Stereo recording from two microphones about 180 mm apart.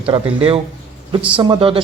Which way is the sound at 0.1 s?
30° right (ahead or behind).